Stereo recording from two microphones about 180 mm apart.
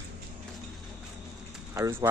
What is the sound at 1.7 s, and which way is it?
Speech, 15° right (ahead or behind).